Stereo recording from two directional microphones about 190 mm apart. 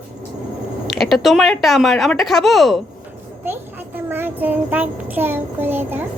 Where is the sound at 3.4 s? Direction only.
10° right (ahead or behind).